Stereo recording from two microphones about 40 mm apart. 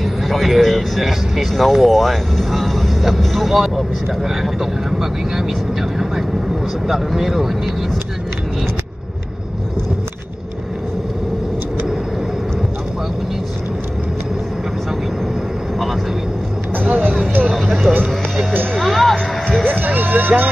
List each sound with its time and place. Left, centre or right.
0.0 s speech: centre
16.7 s vehicle: right
17.5 s a sound: centre
18.8 s music: centre
19.7 s speech: right